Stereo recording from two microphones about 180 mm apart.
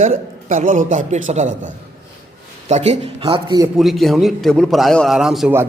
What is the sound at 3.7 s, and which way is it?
A man's voice, centre (ahead or behind).